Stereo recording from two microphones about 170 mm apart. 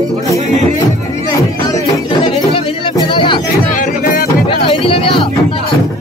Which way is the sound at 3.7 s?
50° left (ahead or behind).